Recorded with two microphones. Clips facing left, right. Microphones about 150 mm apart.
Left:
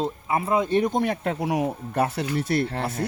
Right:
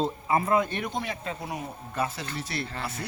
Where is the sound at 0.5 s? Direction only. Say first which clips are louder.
Left 5 dB; 25° left (ahead or behind).